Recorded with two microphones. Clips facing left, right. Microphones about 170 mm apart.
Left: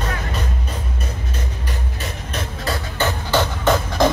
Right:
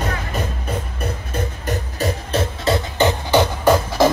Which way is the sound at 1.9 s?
30° right (ahead or behind).